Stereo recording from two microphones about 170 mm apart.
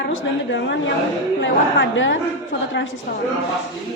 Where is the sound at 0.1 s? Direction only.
90° left.